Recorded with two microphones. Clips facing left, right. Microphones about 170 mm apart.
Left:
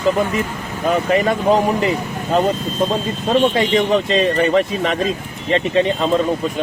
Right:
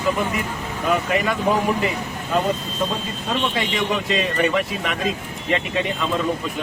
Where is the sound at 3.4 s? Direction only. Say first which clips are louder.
Left 6 dB; 35° left (ahead or behind).